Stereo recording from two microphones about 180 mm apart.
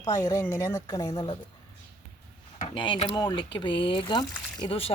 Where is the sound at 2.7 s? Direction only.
25° left (ahead or behind).